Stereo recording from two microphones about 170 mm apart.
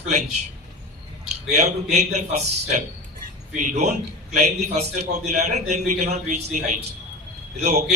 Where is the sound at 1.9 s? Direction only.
40° right (ahead or behind).